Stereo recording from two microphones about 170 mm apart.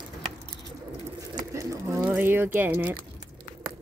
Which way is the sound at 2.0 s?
10° right (ahead or behind).